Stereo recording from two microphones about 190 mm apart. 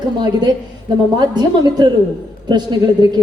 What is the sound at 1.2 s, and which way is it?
Speech, 20° right (ahead or behind).